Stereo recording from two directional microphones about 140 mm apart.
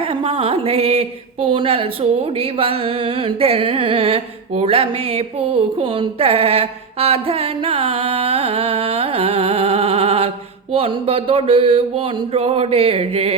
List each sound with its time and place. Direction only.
0.0 s music: 40° right (ahead or behind)